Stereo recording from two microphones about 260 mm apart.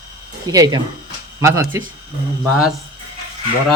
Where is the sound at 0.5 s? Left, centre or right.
Centre.